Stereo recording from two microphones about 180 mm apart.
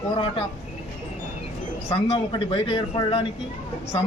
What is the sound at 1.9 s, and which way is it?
A man's voice, 30° left (ahead or behind).